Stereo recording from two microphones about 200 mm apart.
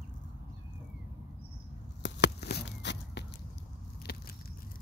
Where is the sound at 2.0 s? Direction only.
60° left (ahead or behind).